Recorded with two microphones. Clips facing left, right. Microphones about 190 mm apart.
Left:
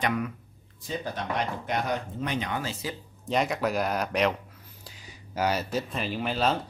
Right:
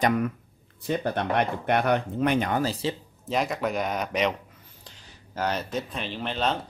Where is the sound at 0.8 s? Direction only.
60° right (ahead or behind); by 2.9 s 35° right (ahead or behind).